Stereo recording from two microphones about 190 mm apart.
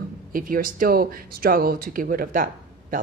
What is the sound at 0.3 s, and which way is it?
Speech, 45° right (ahead or behind).